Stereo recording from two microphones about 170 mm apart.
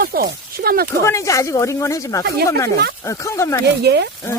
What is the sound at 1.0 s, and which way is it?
Speech, 15° left (ahead or behind).